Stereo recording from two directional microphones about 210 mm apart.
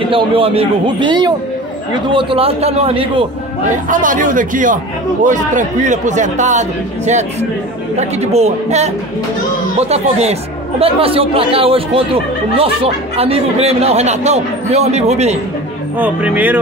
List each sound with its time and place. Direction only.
0.1 s speech: 25° right (ahead or behind)
3.9 s a man's voice: 40° right (ahead or behind)
7.9 s a man's voice: 30° right (ahead or behind)
16.0 s speech: 5° right (ahead or behind)